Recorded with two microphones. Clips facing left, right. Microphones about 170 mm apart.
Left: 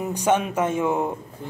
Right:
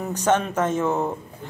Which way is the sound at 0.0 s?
10° left (ahead or behind).